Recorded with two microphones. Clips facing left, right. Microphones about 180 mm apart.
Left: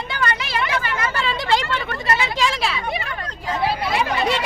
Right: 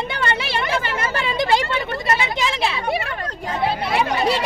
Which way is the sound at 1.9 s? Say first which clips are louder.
Right 1 dB; 20° right (ahead or behind).